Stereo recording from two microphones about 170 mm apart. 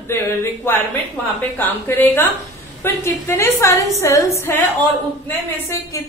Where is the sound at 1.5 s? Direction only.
10° left (ahead or behind).